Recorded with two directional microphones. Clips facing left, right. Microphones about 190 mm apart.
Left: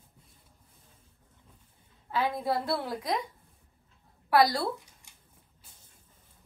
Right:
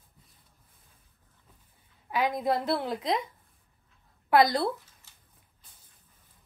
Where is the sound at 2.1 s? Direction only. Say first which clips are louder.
Right 2 dB; 15° right (ahead or behind).